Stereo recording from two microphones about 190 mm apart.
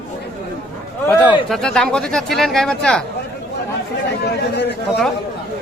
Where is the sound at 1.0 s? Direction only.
10° left (ahead or behind).